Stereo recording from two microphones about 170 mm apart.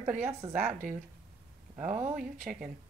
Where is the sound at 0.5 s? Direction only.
45° right (ahead or behind).